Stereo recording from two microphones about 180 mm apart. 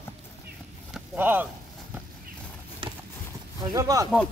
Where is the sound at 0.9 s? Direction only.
10° right (ahead or behind).